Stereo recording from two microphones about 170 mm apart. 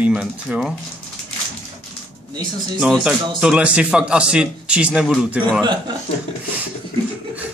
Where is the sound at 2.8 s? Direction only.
5° right (ahead or behind).